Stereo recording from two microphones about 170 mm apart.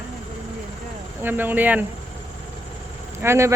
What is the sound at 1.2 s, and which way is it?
Speech, 10° right (ahead or behind).